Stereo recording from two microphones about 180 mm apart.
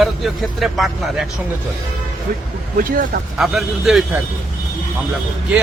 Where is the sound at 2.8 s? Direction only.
50° right (ahead or behind).